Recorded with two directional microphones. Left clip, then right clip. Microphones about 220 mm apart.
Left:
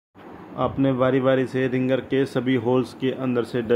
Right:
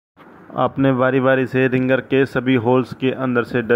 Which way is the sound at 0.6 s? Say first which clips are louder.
Right 5 dB; 35° right (ahead or behind).